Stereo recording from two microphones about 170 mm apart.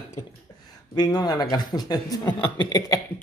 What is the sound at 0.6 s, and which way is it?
A man's voice, 25° left (ahead or behind).